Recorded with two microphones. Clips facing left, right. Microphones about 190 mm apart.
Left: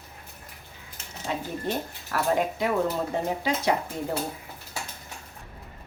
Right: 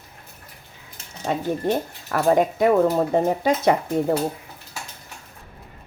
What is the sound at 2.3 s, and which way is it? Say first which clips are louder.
Speech: right 8 dB; 50° right (ahead or behind).